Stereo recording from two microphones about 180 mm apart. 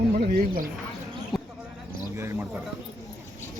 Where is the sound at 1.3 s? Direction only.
Centre (ahead or behind).